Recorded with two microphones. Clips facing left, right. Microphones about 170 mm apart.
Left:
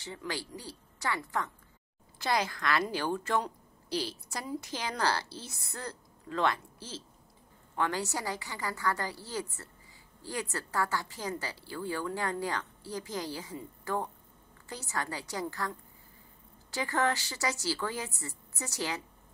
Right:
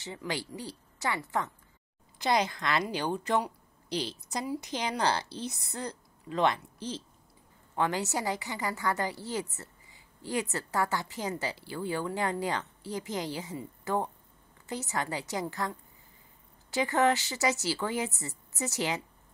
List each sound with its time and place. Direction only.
0.3 s a woman's voice: 15° right (ahead or behind)
16.7 s a woman's voice: 15° right (ahead or behind)